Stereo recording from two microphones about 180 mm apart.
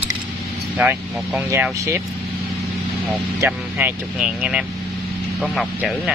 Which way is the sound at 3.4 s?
10° right (ahead or behind).